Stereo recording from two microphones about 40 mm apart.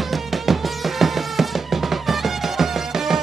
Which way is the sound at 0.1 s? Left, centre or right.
Centre.